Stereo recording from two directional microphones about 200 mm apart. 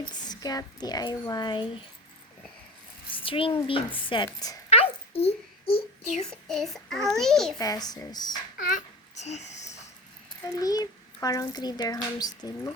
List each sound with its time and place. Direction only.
0.3 s a child's voice: 20° left (ahead or behind)
3.1 s a child's voice: 25° left (ahead or behind)
4.7 s a sound: 30° left (ahead or behind)
6.5 s a child's voice: centre (ahead or behind)
7.6 s a child's voice: 20° left (ahead or behind)
8.5 s babbling: 40° left (ahead or behind)
10.6 s a child's voice: 20° left (ahead or behind)